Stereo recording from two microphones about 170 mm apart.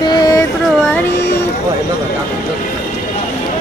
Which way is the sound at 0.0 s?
25° left (ahead or behind).